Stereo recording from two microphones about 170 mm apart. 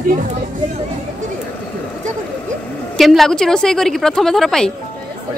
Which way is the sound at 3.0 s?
Centre (ahead or behind).